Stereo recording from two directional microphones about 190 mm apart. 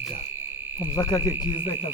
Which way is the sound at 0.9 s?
20° left (ahead or behind).